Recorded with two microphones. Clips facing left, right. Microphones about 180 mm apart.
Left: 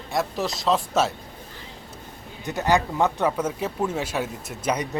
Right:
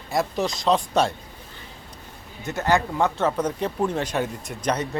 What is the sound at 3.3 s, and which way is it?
A man's voice, 5° left (ahead or behind).